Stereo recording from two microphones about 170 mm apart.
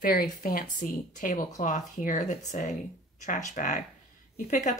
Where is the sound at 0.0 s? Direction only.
60° left (ahead or behind).